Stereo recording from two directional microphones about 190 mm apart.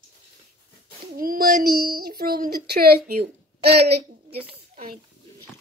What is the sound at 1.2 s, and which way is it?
A child's voice, 50° right (ahead or behind).